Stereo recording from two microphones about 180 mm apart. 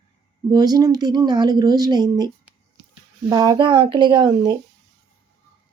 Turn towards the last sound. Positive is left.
turn(degrees=-25)  # may be behind; listen again after turning